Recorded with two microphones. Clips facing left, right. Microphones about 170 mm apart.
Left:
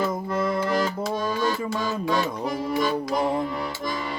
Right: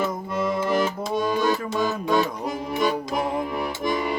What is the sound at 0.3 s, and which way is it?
Music, 10° right (ahead or behind).